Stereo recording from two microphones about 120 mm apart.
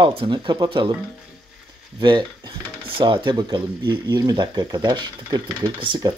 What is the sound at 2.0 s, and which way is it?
Speech, 40° right (ahead or behind).